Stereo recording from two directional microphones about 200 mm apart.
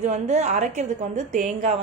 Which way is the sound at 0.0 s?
35° right (ahead or behind).